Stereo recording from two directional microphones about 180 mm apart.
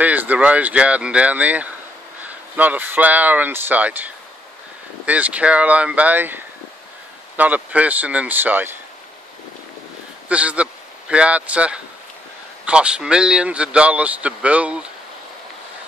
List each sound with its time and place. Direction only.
0.0 s a man's voice: 10° right (ahead or behind)
10.2 s a man's voice: 5° right (ahead or behind)